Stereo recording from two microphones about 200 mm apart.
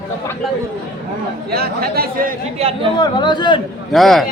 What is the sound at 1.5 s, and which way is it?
Speech, 50° right (ahead or behind).